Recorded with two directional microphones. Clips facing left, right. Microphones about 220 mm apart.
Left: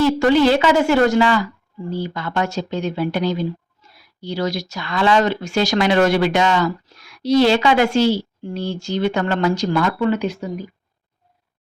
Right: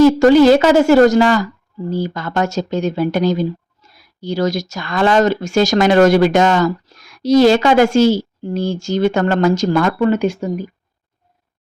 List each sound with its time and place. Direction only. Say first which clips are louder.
0.0 s speech: right 6 dB; 45° right (ahead or behind)